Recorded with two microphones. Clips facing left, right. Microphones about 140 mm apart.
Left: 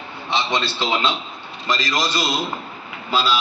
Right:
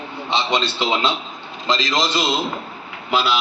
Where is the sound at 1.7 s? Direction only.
25° right (ahead or behind).